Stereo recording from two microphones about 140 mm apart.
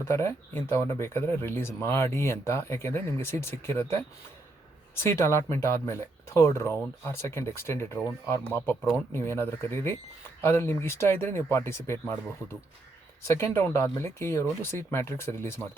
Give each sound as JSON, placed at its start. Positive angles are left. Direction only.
{"t": 0.0, "sound": "speech", "side_deg": 20}
{"t": 5.0, "sound": "speech", "side_deg": 20}
{"t": 13.2, "sound": "speech", "side_deg": 20}